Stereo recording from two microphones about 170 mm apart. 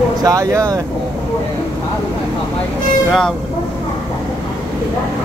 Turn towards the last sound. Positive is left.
turn(degrees=0)  # may be behind; listen again after turning